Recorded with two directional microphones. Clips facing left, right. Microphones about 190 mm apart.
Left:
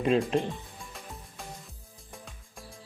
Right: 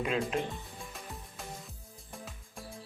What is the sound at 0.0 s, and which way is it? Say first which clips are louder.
Speech: left 7 dB; 30° left (ahead or behind).